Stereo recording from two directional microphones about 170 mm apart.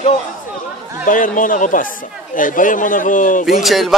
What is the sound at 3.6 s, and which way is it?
Speech, centre (ahead or behind).